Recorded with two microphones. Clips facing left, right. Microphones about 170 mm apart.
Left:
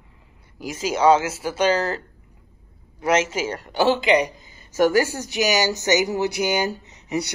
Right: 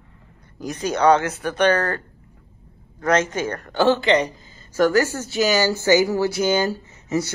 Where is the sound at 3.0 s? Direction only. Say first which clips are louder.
Right 1 dB; 10° left (ahead or behind).